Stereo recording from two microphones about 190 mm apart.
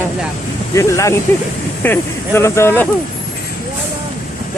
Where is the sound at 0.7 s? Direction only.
15° left (ahead or behind).